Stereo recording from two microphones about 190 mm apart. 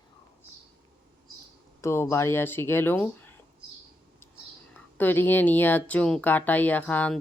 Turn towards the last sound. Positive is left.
turn(degrees=10)  # may be behind; listen again after turning